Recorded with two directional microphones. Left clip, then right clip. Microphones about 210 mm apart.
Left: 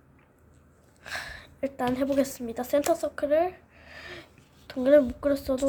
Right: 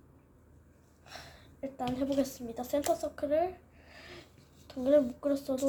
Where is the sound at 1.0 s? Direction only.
45° left (ahead or behind).